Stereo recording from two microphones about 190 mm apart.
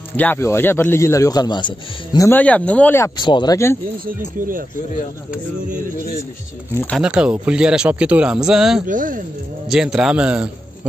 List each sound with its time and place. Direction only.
0.2 s a man's voice: 10° left (ahead or behind)
3.2 s speech: 25° left (ahead or behind)
4.0 s speech: 45° right (ahead or behind)
7.0 s speech: 5° right (ahead or behind)
8.8 s speech: 45° right (ahead or behind)
9.7 s speech: 5° right (ahead or behind)